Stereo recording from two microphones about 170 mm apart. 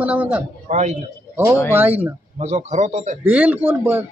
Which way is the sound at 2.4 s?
40° right (ahead or behind).